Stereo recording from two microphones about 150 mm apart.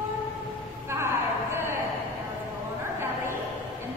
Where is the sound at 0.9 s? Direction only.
15° right (ahead or behind).